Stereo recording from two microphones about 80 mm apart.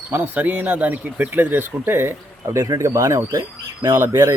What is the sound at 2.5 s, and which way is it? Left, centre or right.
Speech, right.